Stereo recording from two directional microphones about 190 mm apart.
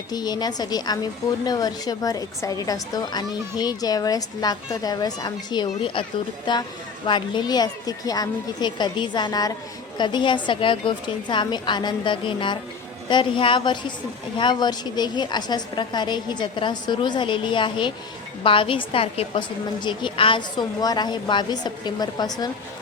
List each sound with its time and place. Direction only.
0.1 s a woman's voice: 20° left (ahead or behind)